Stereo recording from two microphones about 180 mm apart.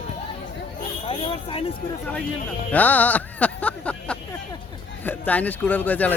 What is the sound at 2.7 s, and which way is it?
Music, 10° left (ahead or behind).